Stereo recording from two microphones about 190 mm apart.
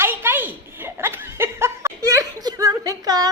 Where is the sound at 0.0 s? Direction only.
10° right (ahead or behind).